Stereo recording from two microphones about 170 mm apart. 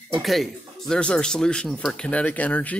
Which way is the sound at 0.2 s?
Centre (ahead or behind).